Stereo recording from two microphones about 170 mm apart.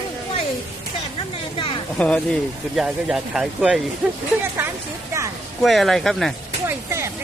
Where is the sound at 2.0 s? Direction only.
5° left (ahead or behind).